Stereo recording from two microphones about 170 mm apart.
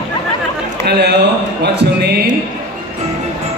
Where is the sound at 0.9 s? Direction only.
75° right (ahead or behind).